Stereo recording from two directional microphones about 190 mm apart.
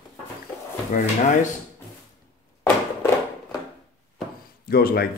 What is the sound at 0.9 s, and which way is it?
Speech, 45° left (ahead or behind).